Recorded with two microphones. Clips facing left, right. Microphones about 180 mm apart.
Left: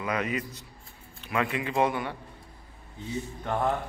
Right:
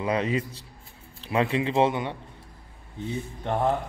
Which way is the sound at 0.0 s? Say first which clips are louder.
Right 4 dB; 30° right (ahead or behind).